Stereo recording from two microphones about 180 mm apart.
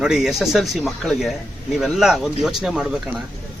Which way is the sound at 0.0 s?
Centre (ahead or behind).